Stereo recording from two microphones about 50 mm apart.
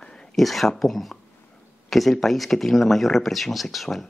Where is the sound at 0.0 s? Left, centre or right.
Centre.